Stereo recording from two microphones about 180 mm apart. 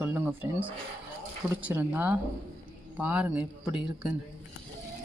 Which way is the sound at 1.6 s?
10° right (ahead or behind).